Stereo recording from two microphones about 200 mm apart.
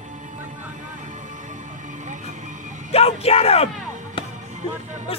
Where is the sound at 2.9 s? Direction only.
30° left (ahead or behind).